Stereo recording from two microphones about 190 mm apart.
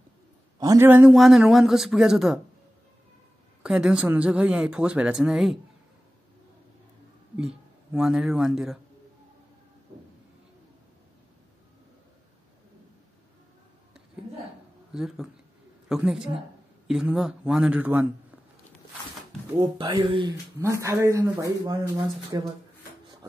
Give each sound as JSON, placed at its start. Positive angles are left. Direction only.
{"t": 0.6, "sound": "speech", "side_deg": -15}
{"t": 3.6, "sound": "speech", "side_deg": -5}
{"t": 7.3, "sound": "a man's voice", "side_deg": -5}
{"t": 14.9, "sound": "speech", "side_deg": -5}
{"t": 19.5, "sound": "speech", "side_deg": -20}